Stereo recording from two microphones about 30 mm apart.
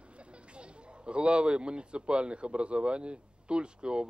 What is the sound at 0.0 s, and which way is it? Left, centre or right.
Speech, right.